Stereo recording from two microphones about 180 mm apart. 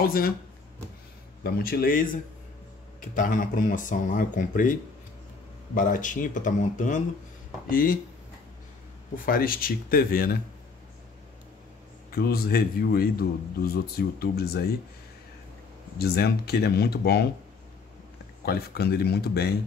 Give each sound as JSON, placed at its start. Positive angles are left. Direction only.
{"t": 0.0, "sound": "speech", "side_deg": 55}
{"t": 1.4, "sound": "speech", "side_deg": 55}
{"t": 3.2, "sound": "speech", "side_deg": 45}
{"t": 5.8, "sound": "speech", "side_deg": 45}
{"t": 9.1, "sound": "speech", "side_deg": 50}
{"t": 12.1, "sound": "speech", "side_deg": 60}
{"t": 16.0, "sound": "speech", "side_deg": 60}
{"t": 18.4, "sound": "speech", "side_deg": 60}